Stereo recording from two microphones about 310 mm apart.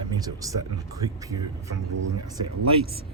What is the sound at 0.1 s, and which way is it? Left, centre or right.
Speech, centre.